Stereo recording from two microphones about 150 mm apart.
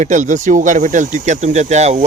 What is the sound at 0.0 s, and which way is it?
Speech, 55° right (ahead or behind).